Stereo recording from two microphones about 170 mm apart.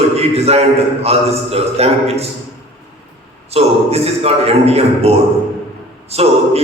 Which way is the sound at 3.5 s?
35° right (ahead or behind).